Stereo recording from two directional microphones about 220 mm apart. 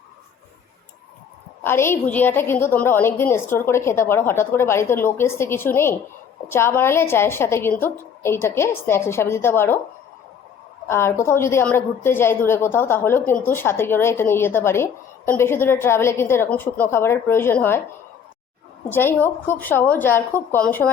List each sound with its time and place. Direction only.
1.6 s a woman's voice: 10° left (ahead or behind)
10.8 s a woman's voice: 10° left (ahead or behind)
18.9 s a woman's voice: 10° left (ahead or behind)